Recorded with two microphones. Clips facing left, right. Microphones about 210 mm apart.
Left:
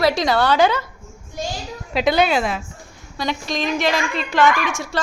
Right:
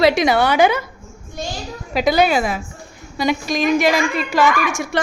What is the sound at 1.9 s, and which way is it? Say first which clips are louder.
Speech: right 2 dB; centre (ahead or behind).